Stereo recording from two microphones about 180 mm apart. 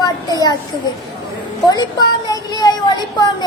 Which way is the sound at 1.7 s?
20° left (ahead or behind).